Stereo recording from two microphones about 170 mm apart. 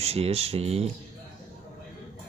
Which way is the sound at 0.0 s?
35° right (ahead or behind).